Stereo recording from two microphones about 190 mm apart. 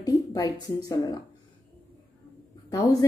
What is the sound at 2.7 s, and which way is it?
Speech, 20° left (ahead or behind).